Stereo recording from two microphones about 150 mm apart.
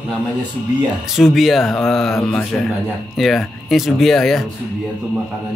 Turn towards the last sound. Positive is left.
turn(degrees=0)  # may be behind; listen again after turning